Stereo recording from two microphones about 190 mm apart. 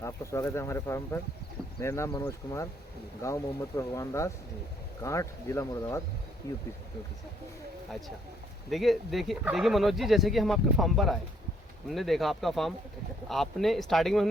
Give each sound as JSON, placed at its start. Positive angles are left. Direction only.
{"t": 0.0, "sound": "speech", "side_deg": 15}
{"t": 8.7, "sound": "speech", "side_deg": 0}